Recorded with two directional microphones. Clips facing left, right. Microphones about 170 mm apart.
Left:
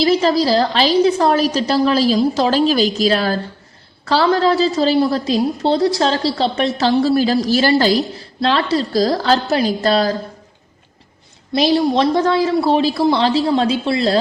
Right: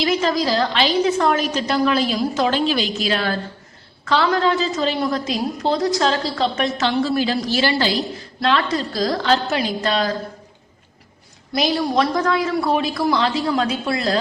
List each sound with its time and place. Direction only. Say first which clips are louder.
0.0 s a woman's voice: left 5 dB; 35° left (ahead or behind)
8.4 s a woman's voice: left 3 dB; 30° left (ahead or behind)
11.5 s speech: left 4 dB; 30° left (ahead or behind)